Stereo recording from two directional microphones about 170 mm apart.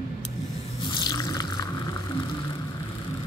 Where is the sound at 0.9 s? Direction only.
25° left (ahead or behind).